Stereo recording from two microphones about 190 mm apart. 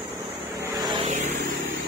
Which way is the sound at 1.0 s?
40° right (ahead or behind).